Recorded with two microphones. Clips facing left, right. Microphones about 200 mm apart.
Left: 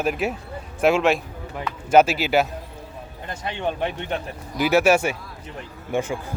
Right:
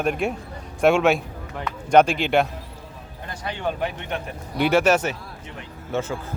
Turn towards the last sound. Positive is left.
turn(degrees=15)  # may be behind; listen again after turning